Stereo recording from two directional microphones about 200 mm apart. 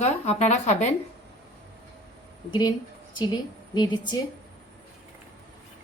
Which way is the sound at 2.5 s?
20° left (ahead or behind).